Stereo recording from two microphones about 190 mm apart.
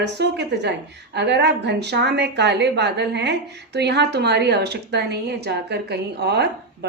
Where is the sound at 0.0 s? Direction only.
65° right (ahead or behind).